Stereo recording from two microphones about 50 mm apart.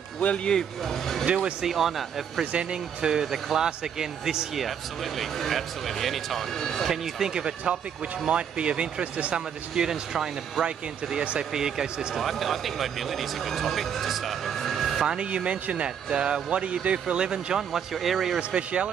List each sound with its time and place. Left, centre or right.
0.5 s speech: centre
1.2 s speech: centre
1.7 s speech: centre
2.5 s speech: centre
5.2 s speech: centre
6.9 s speech: centre
12.2 s speech: centre
15.0 s speech: right; by 18.4 s centre
18.5 s speech: right